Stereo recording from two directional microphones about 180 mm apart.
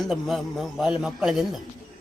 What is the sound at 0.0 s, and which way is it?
A man's voice, centre (ahead or behind).